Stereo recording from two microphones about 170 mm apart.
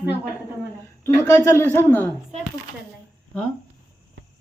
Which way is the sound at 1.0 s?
15° left (ahead or behind).